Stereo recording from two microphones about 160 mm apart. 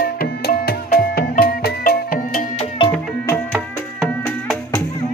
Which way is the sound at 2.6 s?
30° left (ahead or behind).